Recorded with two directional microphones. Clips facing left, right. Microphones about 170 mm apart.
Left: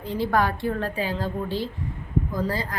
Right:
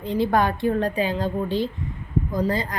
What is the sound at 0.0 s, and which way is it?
Speech, 20° right (ahead or behind).